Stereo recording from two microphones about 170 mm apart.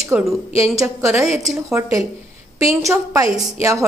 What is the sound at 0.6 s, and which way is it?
A woman's voice, 15° right (ahead or behind).